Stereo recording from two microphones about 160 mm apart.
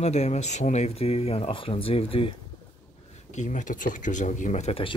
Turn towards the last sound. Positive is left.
turn(degrees=35)  # may be behind; listen again after turning